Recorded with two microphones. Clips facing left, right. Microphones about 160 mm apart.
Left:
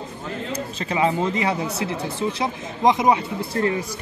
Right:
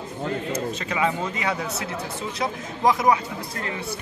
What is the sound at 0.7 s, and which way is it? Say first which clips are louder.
Speech: left 7 dB; 30° left (ahead or behind).